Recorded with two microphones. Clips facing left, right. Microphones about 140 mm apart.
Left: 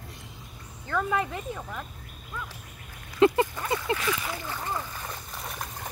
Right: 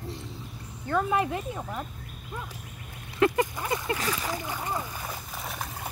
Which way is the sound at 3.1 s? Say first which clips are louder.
Left 3 dB; 20° left (ahead or behind).